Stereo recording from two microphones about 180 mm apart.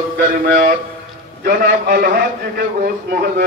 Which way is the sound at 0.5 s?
55° right (ahead or behind).